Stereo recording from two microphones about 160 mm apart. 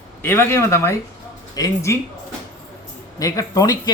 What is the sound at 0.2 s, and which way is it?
Speech, 15° left (ahead or behind).